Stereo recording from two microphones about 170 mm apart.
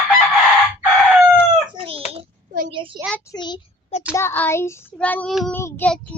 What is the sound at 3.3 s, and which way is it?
Child singing, 25° left (ahead or behind).